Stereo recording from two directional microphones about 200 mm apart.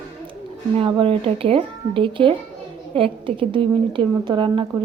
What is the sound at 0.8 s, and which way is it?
A woman's voice, 25° right (ahead or behind).